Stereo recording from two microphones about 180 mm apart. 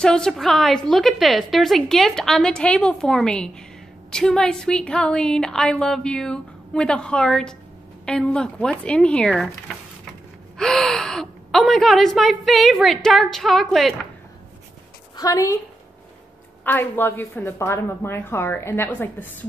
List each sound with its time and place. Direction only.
0.0 s a woman's voice: 5° left (ahead or behind)
10.6 s a woman's voice: 5° left (ahead or behind)
15.1 s a woman's voice: 20° left (ahead or behind)
16.6 s a woman's voice: 10° left (ahead or behind)